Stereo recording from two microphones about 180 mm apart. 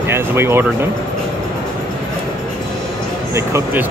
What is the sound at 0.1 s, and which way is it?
Speech, 15° right (ahead or behind).